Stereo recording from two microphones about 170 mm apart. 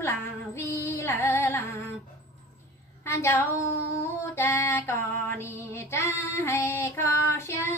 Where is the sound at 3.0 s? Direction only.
15° left (ahead or behind).